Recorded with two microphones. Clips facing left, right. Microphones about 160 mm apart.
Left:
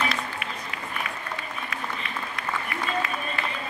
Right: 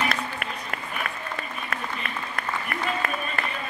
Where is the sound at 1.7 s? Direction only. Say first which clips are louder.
Right 2 dB; 55° right (ahead or behind).